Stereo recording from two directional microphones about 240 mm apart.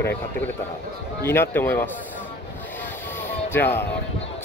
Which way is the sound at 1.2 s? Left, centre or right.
Centre.